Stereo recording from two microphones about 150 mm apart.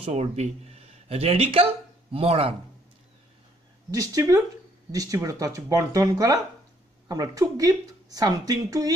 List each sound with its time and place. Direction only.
0.0 s a man's voice: 45° right (ahead or behind)
3.9 s speech: 20° right (ahead or behind)